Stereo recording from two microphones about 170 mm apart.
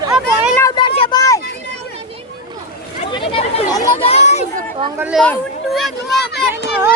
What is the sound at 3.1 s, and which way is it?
Speech, 30° left (ahead or behind).